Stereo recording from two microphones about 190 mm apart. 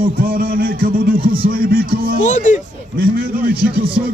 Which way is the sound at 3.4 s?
50° right (ahead or behind).